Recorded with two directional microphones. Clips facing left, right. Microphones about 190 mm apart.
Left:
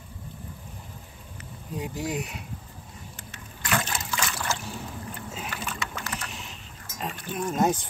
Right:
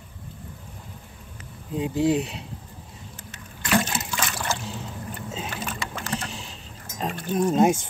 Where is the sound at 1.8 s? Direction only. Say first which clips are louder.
Right 9 dB; 30° right (ahead or behind).